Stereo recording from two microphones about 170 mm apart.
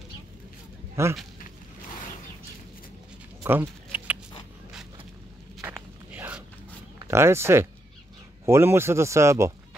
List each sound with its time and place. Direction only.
1.0 s speech: 15° right (ahead or behind)
3.4 s a sound: 10° right (ahead or behind)
5.6 s walk: 10° right (ahead or behind)
7.1 s speech: 15° right (ahead or behind)